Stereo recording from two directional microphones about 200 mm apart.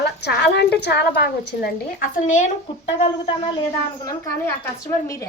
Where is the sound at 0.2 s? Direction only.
55° left (ahead or behind); by 2.5 s 35° left (ahead or behind).